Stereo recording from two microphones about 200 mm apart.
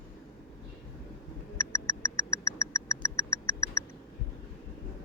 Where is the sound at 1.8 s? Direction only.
15° left (ahead or behind).